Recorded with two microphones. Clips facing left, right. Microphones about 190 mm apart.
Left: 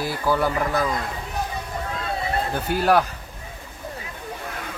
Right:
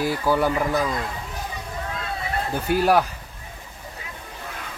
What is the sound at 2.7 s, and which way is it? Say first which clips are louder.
Speech: right 1 dB; 10° right (ahead or behind).